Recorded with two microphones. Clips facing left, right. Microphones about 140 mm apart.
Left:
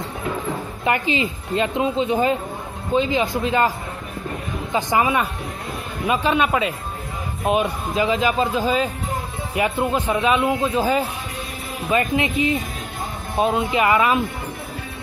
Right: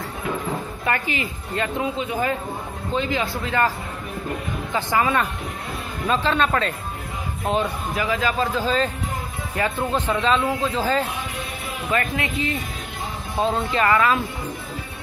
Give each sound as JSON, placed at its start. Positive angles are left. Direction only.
{"t": 0.8, "sound": "speech", "side_deg": 20}
{"t": 4.7, "sound": "a man's voice", "side_deg": 15}